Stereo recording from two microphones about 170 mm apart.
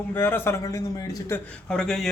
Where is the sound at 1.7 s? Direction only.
5° left (ahead or behind).